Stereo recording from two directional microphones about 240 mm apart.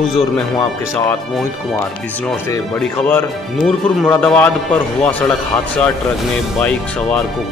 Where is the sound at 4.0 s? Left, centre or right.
Centre.